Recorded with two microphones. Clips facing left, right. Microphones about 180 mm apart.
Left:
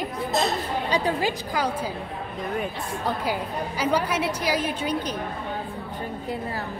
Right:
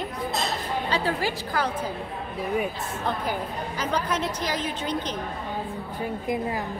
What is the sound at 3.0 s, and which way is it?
A woman's voice, 10° left (ahead or behind).